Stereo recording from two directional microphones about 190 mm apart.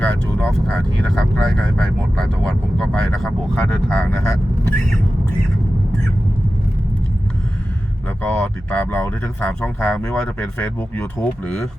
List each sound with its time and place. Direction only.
0.0 s speech: 5° left (ahead or behind)
8.3 s speech: 10° left (ahead or behind)